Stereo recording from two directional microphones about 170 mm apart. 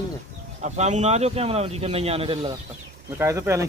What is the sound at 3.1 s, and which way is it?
Speech, 15° right (ahead or behind).